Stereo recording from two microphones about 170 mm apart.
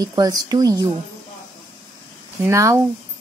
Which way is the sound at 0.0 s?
20° right (ahead or behind).